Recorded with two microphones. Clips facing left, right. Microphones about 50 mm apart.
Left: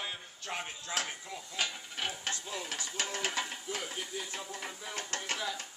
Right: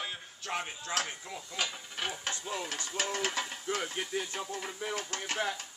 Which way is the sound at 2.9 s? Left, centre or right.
Centre.